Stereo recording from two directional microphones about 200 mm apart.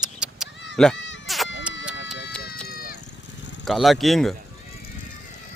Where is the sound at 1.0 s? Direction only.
65° left (ahead or behind).